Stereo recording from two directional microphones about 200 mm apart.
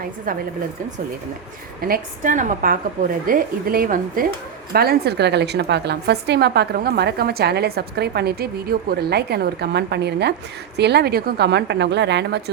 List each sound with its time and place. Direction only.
0.3 s speech: 45° right (ahead or behind)
1.8 s a woman's voice: 45° right (ahead or behind)